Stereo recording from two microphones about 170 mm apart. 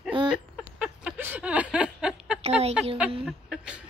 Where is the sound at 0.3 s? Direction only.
5° right (ahead or behind).